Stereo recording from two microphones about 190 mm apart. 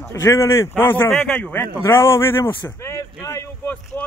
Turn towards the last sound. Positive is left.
turn(degrees=10)  # may be behind; listen again after turning